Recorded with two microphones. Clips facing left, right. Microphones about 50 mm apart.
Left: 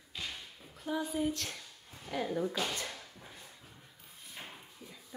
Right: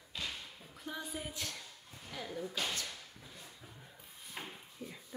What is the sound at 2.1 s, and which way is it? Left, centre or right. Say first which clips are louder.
Speech: left 9 dB; centre.